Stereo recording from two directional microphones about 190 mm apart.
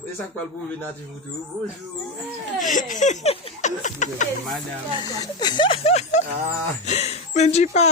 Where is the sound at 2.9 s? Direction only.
40° left (ahead or behind).